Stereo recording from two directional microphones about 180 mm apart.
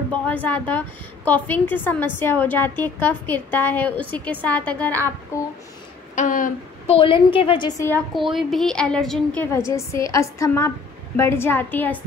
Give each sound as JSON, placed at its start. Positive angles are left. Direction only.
{"t": 0.1, "sound": "a woman's voice", "side_deg": 10}
{"t": 6.1, "sound": "a sound", "side_deg": 45}
{"t": 6.9, "sound": "a woman's voice", "side_deg": 30}
{"t": 8.1, "sound": "a woman's voice", "side_deg": 0}
{"t": 9.5, "sound": "a woman's voice", "side_deg": 15}